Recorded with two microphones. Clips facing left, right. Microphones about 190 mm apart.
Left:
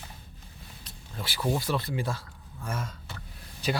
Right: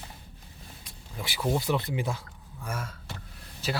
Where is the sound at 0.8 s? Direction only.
15° right (ahead or behind).